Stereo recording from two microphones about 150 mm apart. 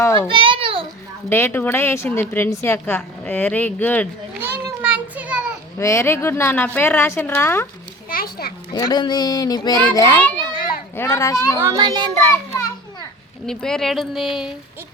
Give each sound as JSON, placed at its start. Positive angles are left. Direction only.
{"t": 0.0, "sound": "a child's voice", "side_deg": 20}
{"t": 0.3, "sound": "a sound", "side_deg": -35}
{"t": 1.3, "sound": "a woman's voice", "side_deg": 15}
{"t": 4.5, "sound": "children playing", "side_deg": -10}
{"t": 5.7, "sound": "a woman's voice", "side_deg": 20}
{"t": 8.1, "sound": "a sound", "side_deg": 85}
{"t": 8.7, "sound": "a child's voice", "side_deg": 25}
{"t": 11.5, "sound": "a child's voice", "side_deg": -20}
{"t": 13.5, "sound": "speech", "side_deg": 5}